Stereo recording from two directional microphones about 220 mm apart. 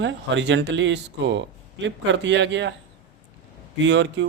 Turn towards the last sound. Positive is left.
turn(degrees=-55)  # may be behind; listen again after turning